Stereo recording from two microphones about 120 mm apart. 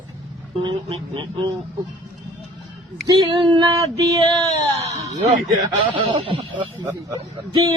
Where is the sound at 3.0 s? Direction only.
40° right (ahead or behind).